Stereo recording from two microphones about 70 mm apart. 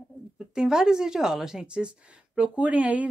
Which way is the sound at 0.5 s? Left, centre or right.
Centre.